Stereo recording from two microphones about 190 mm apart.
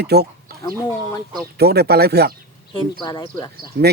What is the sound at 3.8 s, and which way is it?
Speech, 50° right (ahead or behind).